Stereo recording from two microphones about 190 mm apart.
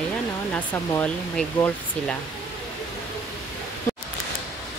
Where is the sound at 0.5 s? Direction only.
10° left (ahead or behind).